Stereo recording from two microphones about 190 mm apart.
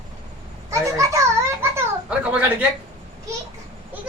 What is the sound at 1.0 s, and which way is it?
A child's voice, 15° right (ahead or behind).